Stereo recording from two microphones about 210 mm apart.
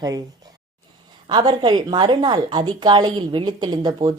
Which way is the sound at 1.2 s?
20° right (ahead or behind).